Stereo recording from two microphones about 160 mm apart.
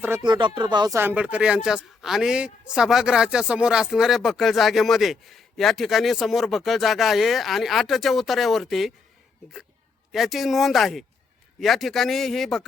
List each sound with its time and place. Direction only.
0.2 s speech: 30° right (ahead or behind)
0.9 s a man's voice: 10° right (ahead or behind)
10.1 s a man's voice: centre (ahead or behind)